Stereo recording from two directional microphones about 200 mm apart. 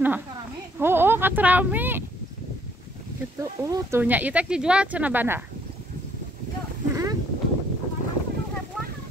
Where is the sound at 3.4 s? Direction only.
15° right (ahead or behind).